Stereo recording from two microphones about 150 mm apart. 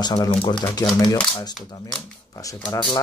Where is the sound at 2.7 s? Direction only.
30° left (ahead or behind).